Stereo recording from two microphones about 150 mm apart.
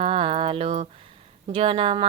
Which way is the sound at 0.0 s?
40° right (ahead or behind).